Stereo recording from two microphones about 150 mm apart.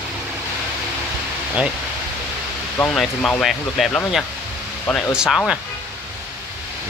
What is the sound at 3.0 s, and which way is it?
Speech, 5° left (ahead or behind).